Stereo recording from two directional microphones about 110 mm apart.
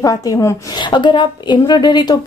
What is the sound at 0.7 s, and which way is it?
A woman's voice, 40° left (ahead or behind).